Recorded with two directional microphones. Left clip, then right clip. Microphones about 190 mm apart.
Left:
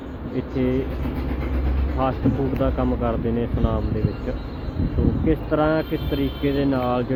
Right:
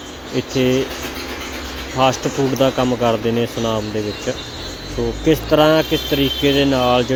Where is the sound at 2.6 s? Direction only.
20° right (ahead or behind).